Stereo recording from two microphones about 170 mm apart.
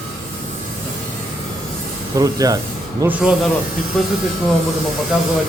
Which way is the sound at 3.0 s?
10° right (ahead or behind).